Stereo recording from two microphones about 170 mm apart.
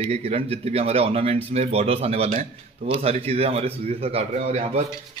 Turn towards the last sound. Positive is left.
turn(degrees=-40)  # may be behind; listen again after turning